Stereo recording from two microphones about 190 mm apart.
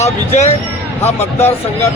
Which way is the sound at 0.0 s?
35° left (ahead or behind).